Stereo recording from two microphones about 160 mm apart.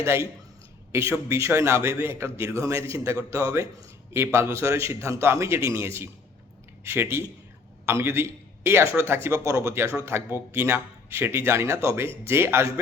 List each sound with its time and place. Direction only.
0.0 s a man's voice: 15° right (ahead or behind)